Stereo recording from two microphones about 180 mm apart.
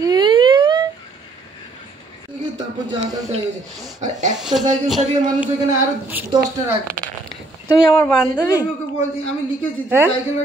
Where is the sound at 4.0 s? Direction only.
40° right (ahead or behind).